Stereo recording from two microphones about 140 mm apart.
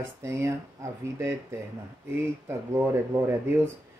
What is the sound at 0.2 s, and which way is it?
Speech, 20° right (ahead or behind).